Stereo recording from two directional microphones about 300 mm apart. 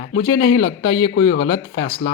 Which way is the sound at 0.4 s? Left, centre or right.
Left.